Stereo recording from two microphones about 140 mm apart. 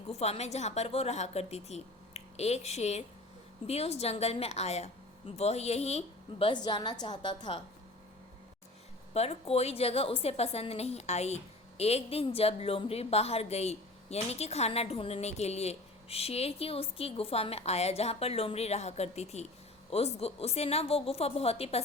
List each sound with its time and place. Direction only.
0.1 s a woman's voice: 50° left (ahead or behind)
6.4 s a woman's voice: 35° left (ahead or behind)
9.1 s a woman's voice: 45° left (ahead or behind)